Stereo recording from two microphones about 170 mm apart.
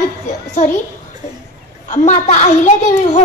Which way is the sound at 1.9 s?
45° left (ahead or behind).